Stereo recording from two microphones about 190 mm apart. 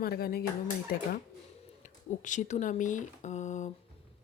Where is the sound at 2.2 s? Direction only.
40° left (ahead or behind).